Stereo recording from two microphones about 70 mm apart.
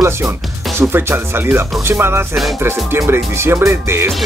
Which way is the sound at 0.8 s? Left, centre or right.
Right.